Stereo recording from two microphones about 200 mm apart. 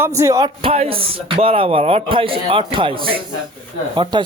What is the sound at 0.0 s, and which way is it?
Speech, 15° right (ahead or behind).